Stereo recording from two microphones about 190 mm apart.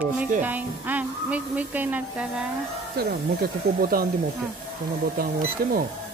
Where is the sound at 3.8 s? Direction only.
50° right (ahead or behind).